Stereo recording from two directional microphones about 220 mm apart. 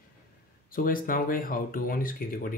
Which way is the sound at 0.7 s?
40° left (ahead or behind).